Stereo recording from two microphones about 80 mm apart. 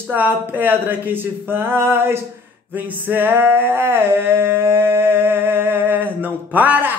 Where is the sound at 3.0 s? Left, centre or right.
Right.